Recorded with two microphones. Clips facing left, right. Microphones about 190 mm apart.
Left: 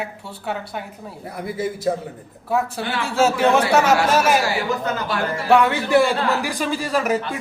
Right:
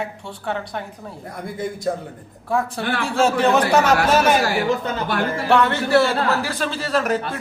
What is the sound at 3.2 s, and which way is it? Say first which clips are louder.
Speech: left 1 dB; 5° left (ahead or behind).